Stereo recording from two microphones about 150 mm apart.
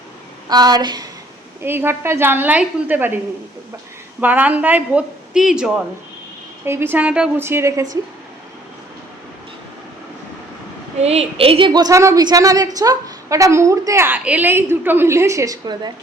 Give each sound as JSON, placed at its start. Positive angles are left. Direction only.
{"t": 0.4, "sound": "a woman's voice", "side_deg": -25}
{"t": 1.6, "sound": "speech", "side_deg": -15}
{"t": 4.2, "sound": "speech", "side_deg": -10}
{"t": 6.7, "sound": "speech", "side_deg": -15}
{"t": 11.0, "sound": "a woman's voice", "side_deg": -45}